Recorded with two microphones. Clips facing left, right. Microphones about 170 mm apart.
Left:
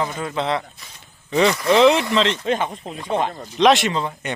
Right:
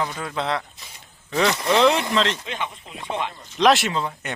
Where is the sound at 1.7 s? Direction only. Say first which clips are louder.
Left 3 dB; centre (ahead or behind).